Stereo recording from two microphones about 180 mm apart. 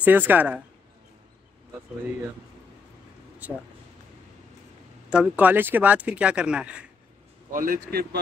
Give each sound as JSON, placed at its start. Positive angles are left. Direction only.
{"t": 0.0, "sound": "speech", "side_deg": -10}
{"t": 3.4, "sound": "speech", "side_deg": -10}
{"t": 5.1, "sound": "speech", "side_deg": -5}
{"t": 7.5, "sound": "a man's voice", "side_deg": -50}